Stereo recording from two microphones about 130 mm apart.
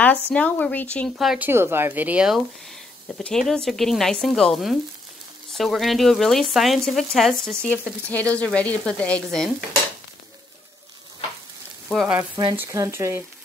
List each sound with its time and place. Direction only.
0.0 s speech: 10° left (ahead or behind)
1.1 s speech: 5° right (ahead or behind)
1.5 s speech: 20° right (ahead or behind); by 9.5 s 5° left (ahead or behind)
12.2 s speech: 30° right (ahead or behind)